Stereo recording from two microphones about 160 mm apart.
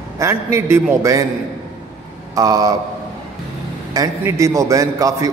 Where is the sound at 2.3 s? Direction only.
20° right (ahead or behind).